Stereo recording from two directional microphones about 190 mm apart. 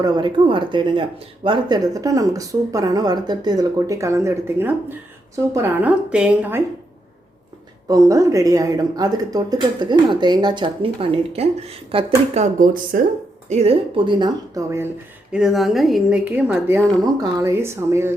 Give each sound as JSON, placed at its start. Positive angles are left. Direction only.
{"t": 0.0, "sound": "a woman's voice", "side_deg": -25}
{"t": 7.9, "sound": "speech", "side_deg": -20}
{"t": 13.5, "sound": "speech", "side_deg": -30}
{"t": 15.3, "sound": "a woman's voice", "side_deg": -5}